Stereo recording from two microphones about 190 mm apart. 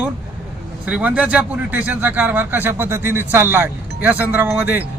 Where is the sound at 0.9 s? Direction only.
5° right (ahead or behind).